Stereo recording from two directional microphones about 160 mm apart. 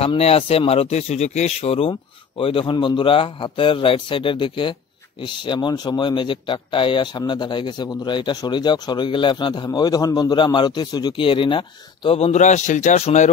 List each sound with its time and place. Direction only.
0.0 s a man's voice: 40° left (ahead or behind)